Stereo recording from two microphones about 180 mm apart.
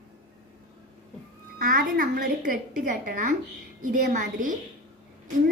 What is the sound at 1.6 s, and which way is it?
A child's voice, 50° right (ahead or behind).